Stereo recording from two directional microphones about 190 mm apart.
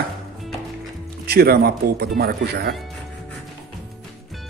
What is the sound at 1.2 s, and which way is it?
Speech, 55° right (ahead or behind).